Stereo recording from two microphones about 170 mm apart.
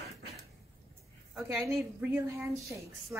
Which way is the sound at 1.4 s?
15° right (ahead or behind).